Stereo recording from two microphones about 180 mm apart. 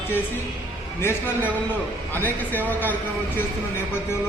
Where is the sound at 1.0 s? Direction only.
10° left (ahead or behind).